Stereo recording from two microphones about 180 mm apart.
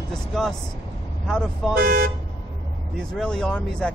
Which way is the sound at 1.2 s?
Centre (ahead or behind).